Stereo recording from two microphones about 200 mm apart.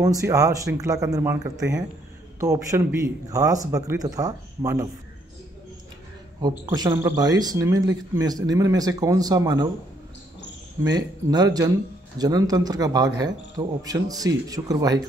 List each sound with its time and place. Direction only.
0.0 s a man's voice: 15° right (ahead or behind)
6.6 s a man's voice: 15° right (ahead or behind)
10.8 s a man's voice: 20° right (ahead or behind)